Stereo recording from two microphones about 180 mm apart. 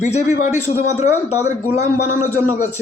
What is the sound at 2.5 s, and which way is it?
Speech, 45° left (ahead or behind).